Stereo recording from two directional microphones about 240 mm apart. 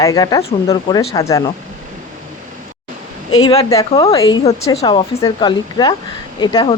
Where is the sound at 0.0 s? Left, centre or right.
Centre.